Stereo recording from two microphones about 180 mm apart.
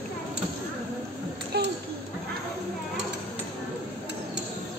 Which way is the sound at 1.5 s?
60° right (ahead or behind).